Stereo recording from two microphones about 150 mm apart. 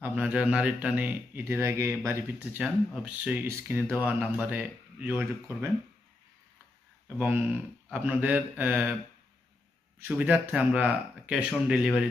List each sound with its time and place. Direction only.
0.0 s speech: 10° right (ahead or behind)
2.6 s speech: 5° right (ahead or behind)
7.2 s speech: 10° right (ahead or behind)
10.1 s speech: 10° right (ahead or behind)